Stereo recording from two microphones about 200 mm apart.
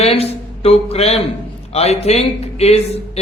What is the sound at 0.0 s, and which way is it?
A man's voice, 30° left (ahead or behind).